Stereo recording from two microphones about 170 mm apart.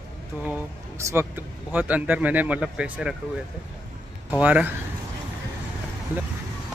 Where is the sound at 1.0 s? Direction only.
15° right (ahead or behind).